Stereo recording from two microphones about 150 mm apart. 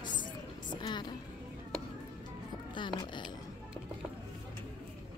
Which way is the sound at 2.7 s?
30° left (ahead or behind).